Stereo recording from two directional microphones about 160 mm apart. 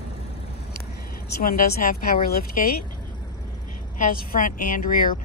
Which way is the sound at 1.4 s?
60° left (ahead or behind).